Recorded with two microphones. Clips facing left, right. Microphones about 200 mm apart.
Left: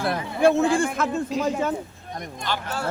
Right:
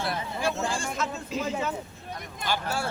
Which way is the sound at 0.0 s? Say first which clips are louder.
Left 9 dB; 55° left (ahead or behind).